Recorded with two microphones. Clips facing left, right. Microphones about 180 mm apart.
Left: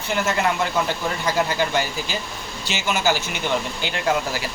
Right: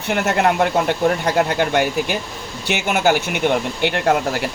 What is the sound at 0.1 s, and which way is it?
Speech, 60° right (ahead or behind).